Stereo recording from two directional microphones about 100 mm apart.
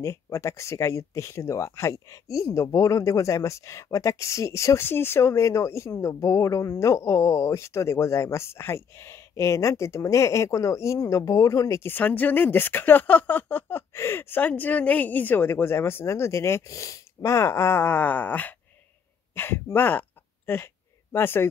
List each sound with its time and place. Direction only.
0.0 s speech: 30° left (ahead or behind)